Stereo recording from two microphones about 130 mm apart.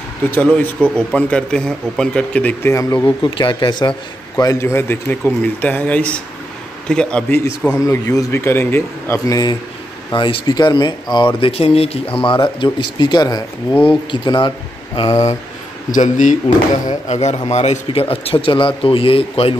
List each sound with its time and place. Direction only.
0.3 s speech: 10° left (ahead or behind)
3.2 s speech: 40° left (ahead or behind)
4.4 s speech: 25° left (ahead or behind)
7.7 s a man's voice: 25° left (ahead or behind)
10.1 s speech: 35° left (ahead or behind)
11.4 s speech: 50° left (ahead or behind)
15.9 s speech: 75° left (ahead or behind); by 19.5 s 45° left (ahead or behind)